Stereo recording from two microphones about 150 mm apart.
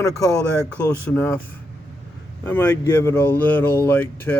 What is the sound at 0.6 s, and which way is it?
Speech, 10° left (ahead or behind).